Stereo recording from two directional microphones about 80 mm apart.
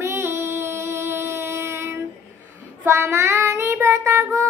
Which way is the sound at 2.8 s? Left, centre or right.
Right.